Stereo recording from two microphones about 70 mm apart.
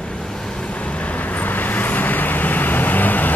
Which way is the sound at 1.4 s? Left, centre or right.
Left.